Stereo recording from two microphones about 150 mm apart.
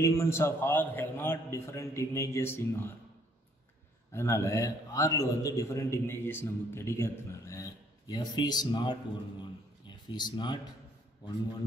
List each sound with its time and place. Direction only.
0.0 s a man's voice: 20° left (ahead or behind)
4.1 s a man's voice: 20° left (ahead or behind)
9.4 s a sound: 30° left (ahead or behind)